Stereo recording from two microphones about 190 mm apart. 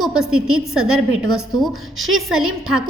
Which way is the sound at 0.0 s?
5° right (ahead or behind).